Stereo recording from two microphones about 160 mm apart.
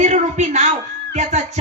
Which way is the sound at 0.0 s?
45° right (ahead or behind).